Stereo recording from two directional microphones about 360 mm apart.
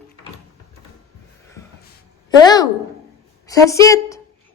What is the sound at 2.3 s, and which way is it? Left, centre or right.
Speech, centre.